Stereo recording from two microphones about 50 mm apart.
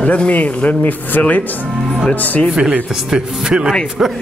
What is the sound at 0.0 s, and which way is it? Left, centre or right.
Speech, left.